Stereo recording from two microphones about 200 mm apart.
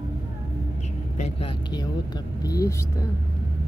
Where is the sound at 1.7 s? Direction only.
20° left (ahead or behind).